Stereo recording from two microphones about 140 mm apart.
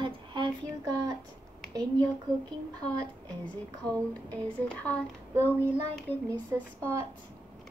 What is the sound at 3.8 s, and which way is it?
Speech, 10° left (ahead or behind).